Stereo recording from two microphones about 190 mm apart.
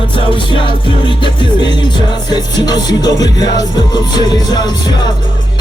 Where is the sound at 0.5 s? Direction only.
25° left (ahead or behind).